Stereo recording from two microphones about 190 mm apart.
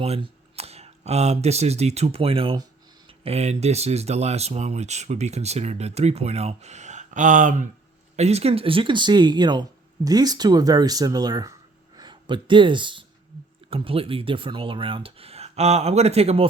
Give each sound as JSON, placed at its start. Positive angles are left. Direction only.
{"t": 0.0, "sound": "speech", "side_deg": -30}